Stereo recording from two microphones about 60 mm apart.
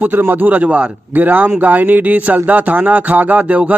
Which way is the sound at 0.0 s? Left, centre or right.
Right.